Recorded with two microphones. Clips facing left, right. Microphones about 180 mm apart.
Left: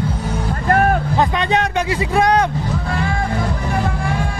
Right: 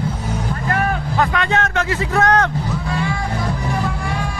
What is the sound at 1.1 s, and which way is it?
Vehicle, 20° left (ahead or behind).